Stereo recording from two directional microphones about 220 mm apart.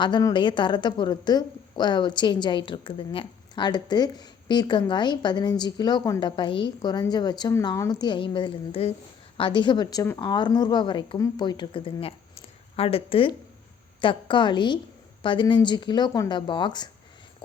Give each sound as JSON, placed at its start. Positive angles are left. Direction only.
{"t": 0.0, "sound": "a woman's voice", "side_deg": 15}